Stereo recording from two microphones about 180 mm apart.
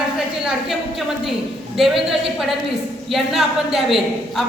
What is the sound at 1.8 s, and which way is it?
Speech, centre (ahead or behind).